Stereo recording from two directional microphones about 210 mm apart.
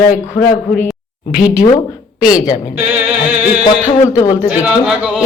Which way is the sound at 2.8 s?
10° right (ahead or behind).